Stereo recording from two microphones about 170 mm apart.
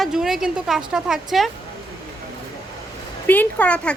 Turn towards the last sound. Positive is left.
turn(degrees=5)  # may be behind; listen again after turning